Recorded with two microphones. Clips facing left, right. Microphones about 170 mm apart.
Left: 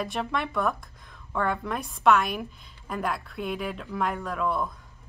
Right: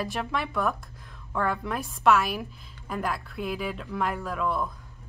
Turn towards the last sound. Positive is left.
turn(degrees=0)  # may be behind; listen again after turning